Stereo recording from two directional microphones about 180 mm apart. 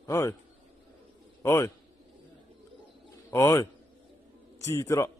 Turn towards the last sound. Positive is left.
turn(degrees=15)  # may be behind; listen again after turning